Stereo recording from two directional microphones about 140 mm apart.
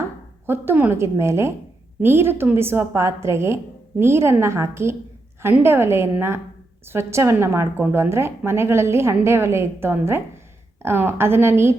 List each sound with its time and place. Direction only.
0.4 s a woman's voice: 15° right (ahead or behind)